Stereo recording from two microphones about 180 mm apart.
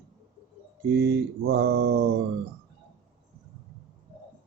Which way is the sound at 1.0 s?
60° right (ahead or behind).